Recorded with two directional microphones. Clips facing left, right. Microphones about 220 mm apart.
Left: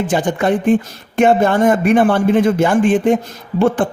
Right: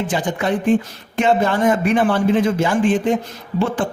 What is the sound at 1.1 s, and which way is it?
A woman's voice, 50° left (ahead or behind).